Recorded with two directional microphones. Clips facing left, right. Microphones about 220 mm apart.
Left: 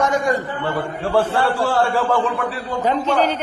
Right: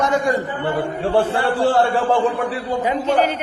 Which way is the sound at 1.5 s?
35° right (ahead or behind).